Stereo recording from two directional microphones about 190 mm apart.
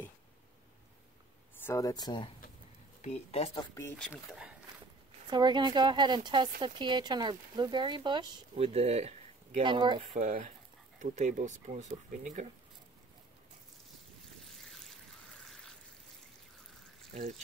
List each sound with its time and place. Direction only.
1.6 s speech: 15° left (ahead or behind); by 3.6 s 30° left (ahead or behind)
4.0 s speech: centre (ahead or behind)
5.3 s speech: 25° right (ahead or behind)
9.7 s speech: 25° right (ahead or behind)
10.1 s speech: 40° right (ahead or behind)
14.5 s a sound: centre (ahead or behind)